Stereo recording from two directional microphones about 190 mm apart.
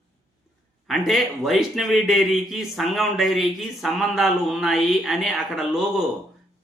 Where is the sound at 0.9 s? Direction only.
Centre (ahead or behind).